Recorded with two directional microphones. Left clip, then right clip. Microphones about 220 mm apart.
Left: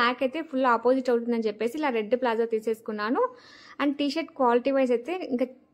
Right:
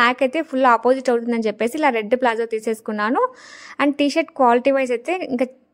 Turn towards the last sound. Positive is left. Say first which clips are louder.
# right 7 dB
turn(degrees=-35)  # may be behind; listen again after turning